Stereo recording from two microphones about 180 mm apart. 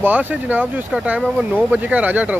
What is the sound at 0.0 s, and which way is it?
Speech, 10° right (ahead or behind).